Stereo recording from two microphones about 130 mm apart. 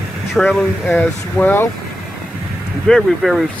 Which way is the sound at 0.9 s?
15° left (ahead or behind).